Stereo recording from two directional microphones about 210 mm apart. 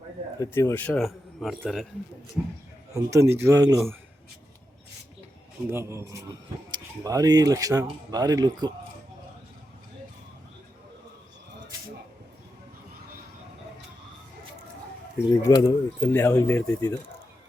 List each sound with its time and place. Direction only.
0.3 s speech: 10° left (ahead or behind)
2.9 s speech: 15° right (ahead or behind)
5.6 s speech: 10° right (ahead or behind)
15.3 s speech: 15° left (ahead or behind)